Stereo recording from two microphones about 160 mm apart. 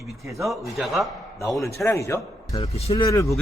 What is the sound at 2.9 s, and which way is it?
Speech, 20° left (ahead or behind).